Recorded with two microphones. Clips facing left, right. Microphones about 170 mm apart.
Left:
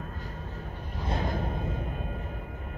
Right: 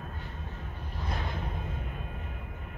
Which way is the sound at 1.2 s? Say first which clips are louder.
Left 6 dB; 40° left (ahead or behind).